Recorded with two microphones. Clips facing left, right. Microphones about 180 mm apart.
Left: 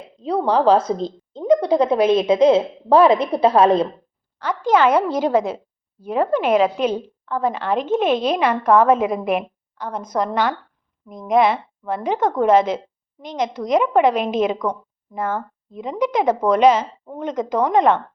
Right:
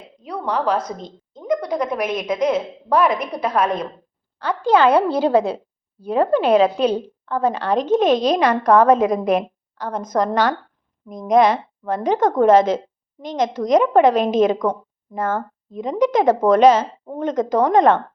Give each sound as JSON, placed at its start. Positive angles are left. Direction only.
{"t": 0.2, "sound": "a woman's voice", "side_deg": 30}
{"t": 4.6, "sound": "a woman's voice", "side_deg": -30}